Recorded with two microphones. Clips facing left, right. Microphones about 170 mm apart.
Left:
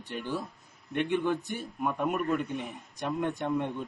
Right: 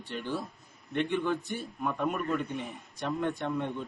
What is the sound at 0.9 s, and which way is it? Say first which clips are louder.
A man's voice: left 1 dB; 15° left (ahead or behind).